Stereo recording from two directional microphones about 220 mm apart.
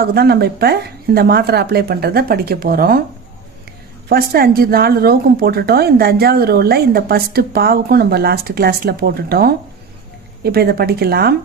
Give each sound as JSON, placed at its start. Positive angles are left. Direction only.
{"t": 0.0, "sound": "a woman's voice", "side_deg": -45}
{"t": 4.1, "sound": "a woman's voice", "side_deg": -45}